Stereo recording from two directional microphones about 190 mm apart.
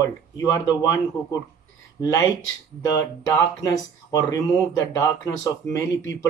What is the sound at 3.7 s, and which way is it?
Speech, 20° left (ahead or behind).